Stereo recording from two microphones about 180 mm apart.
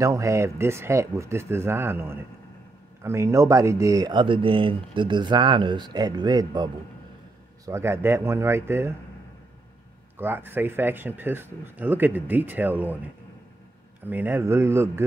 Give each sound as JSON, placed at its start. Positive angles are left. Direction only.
{"t": 0.0, "sound": "speech", "side_deg": -15}
{"t": 10.1, "sound": "speech", "side_deg": -10}
{"t": 14.0, "sound": "speech", "side_deg": -10}